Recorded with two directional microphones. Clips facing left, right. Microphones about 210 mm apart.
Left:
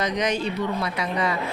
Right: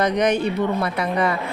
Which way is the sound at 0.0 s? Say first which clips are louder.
Right 5 dB; 55° right (ahead or behind).